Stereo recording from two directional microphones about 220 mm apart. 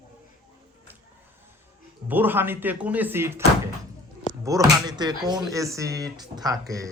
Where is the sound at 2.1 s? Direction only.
10° right (ahead or behind).